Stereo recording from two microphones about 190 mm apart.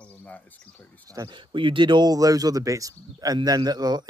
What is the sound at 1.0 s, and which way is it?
Speech, 20° right (ahead or behind).